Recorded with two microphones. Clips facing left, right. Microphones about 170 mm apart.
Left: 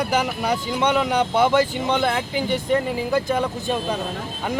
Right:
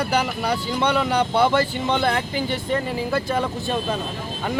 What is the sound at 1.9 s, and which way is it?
Speech, centre (ahead or behind).